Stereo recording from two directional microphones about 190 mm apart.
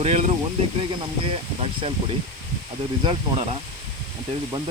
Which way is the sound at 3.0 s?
30° right (ahead or behind).